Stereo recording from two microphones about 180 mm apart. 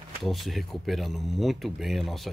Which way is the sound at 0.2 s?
Centre (ahead or behind).